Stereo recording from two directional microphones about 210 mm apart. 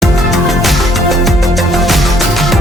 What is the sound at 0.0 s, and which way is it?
Music, centre (ahead or behind).